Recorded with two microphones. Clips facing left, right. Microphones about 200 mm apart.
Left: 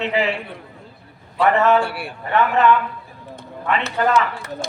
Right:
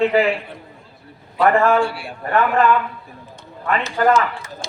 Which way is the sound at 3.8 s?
65° left (ahead or behind).